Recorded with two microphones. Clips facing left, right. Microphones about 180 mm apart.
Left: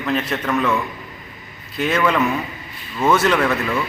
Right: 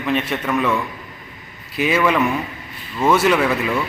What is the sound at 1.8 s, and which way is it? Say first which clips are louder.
Speech: right 1 dB; 5° right (ahead or behind).